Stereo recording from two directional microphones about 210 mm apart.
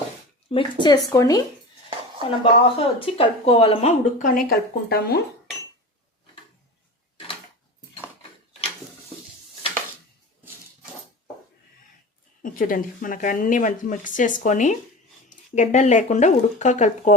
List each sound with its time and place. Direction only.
0.5 s speech: 20° left (ahead or behind)
2.4 s speech: 25° left (ahead or behind); by 5.2 s 45° left (ahead or behind)
12.4 s speech: 40° left (ahead or behind)